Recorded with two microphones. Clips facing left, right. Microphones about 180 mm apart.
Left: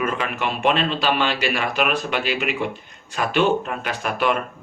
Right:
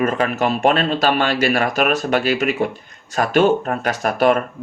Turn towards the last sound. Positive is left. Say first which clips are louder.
# right 6 dB
turn(degrees=-40)  # may be behind; listen again after turning